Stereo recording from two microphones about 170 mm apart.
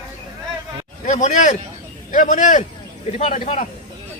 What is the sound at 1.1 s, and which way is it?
Speech, 45° left (ahead or behind).